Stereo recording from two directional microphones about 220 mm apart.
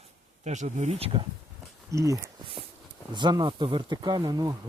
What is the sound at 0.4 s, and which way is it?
Speech, 30° right (ahead or behind).